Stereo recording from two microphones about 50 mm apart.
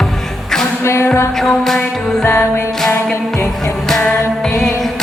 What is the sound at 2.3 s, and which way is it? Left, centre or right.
Music, left.